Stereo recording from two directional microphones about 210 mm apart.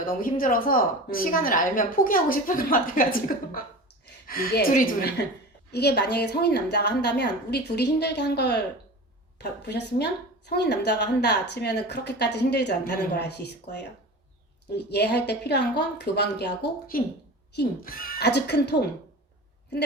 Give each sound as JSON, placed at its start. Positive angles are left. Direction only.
{"t": 0.0, "sound": "a woman's voice", "side_deg": 40}
{"t": 17.5, "sound": "a woman's voice", "side_deg": 50}